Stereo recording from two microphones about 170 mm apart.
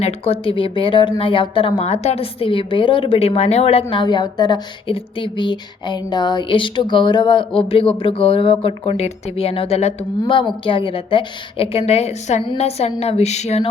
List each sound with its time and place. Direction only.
0.0 s speech: 35° left (ahead or behind)